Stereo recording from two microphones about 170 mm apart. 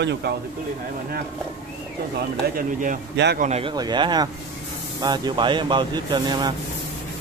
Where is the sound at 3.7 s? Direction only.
25° right (ahead or behind).